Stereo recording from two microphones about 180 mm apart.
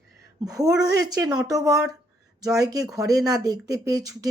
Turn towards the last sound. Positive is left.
turn(degrees=-20)  # may be behind; listen again after turning